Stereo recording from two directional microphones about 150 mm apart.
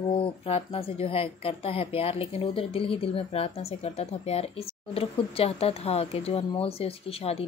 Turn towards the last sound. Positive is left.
turn(degrees=40)  # may be behind; listen again after turning